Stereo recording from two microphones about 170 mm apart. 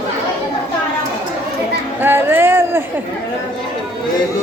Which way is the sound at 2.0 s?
15° right (ahead or behind).